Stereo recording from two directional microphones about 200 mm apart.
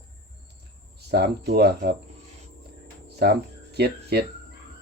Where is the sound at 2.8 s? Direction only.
55° right (ahead or behind).